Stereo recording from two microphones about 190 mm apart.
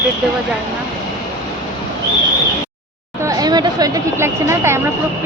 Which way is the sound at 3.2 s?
20° right (ahead or behind).